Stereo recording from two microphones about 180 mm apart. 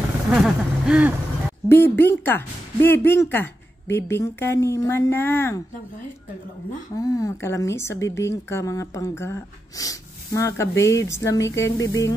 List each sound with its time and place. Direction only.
0.3 s a sound: 5° right (ahead or behind)
1.7 s speech: 15° left (ahead or behind)
7.0 s speech: 20° left (ahead or behind)